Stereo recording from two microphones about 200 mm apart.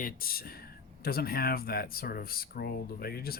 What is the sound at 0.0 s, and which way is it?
Speech, 45° left (ahead or behind).